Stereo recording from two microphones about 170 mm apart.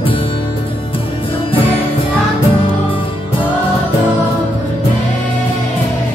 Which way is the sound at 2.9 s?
30° left (ahead or behind).